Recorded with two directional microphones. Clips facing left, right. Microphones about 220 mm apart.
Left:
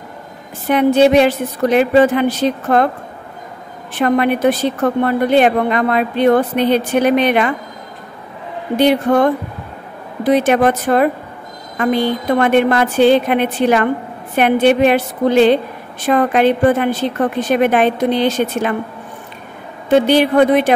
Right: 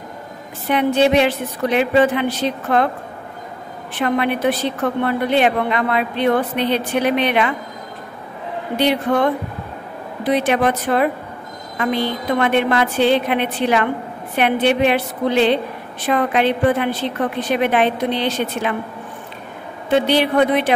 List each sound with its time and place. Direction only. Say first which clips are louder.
0.7 s a woman's voice: left 5 dB; 45° left (ahead or behind)
4.0 s a woman's voice: left 5 dB; 45° left (ahead or behind)
8.7 s a woman's voice: left 5 dB; 45° left (ahead or behind)
19.9 s a woman's voice: left 4 dB; 45° left (ahead or behind)